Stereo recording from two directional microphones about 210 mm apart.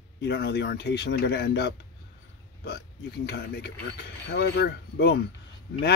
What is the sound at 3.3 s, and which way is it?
Speech, 50° left (ahead or behind).